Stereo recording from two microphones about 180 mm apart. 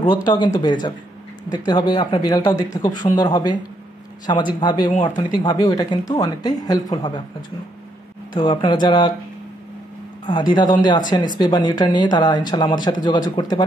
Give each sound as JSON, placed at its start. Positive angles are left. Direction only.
{"t": 0.0, "sound": "speech", "side_deg": 25}
{"t": 8.4, "sound": "speech", "side_deg": 25}
{"t": 10.2, "sound": "speech", "side_deg": 25}